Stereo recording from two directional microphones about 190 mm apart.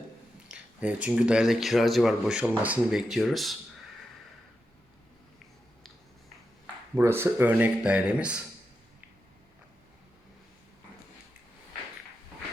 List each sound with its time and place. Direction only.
0.4 s speech: 5° right (ahead or behind)
6.9 s speech: 10° right (ahead or behind)